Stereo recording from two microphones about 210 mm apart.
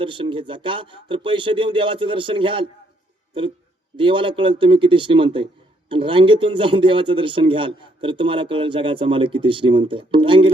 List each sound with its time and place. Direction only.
0.0 s a man's voice: 25° right (ahead or behind)
3.9 s a man's voice: 25° right (ahead or behind)